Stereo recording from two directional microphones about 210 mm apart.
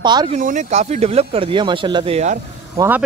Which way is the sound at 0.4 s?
35° right (ahead or behind).